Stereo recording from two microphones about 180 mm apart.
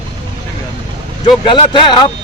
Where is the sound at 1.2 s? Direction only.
25° left (ahead or behind).